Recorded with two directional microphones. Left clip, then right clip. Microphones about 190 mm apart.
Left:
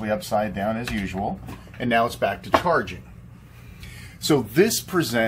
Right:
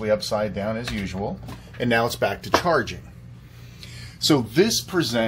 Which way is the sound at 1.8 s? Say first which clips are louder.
Even; 60° right (ahead or behind).